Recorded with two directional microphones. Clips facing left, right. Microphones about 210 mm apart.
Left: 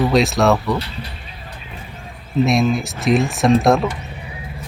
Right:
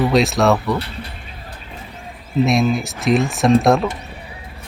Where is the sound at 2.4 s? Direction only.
Centre (ahead or behind).